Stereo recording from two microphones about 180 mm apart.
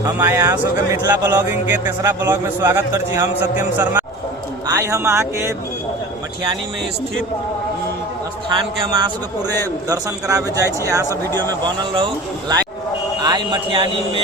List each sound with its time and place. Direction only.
0.0 s speech: 15° right (ahead or behind)
9.9 s a man's voice: 20° right (ahead or behind)